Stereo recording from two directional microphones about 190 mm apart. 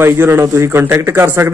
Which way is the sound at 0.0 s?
10° right (ahead or behind).